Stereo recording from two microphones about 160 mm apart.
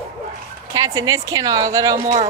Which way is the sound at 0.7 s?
20° right (ahead or behind).